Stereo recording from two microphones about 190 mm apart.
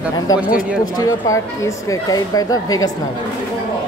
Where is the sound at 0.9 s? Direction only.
15° left (ahead or behind).